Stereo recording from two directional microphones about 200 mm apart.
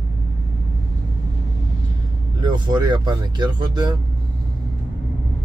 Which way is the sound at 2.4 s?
20° right (ahead or behind).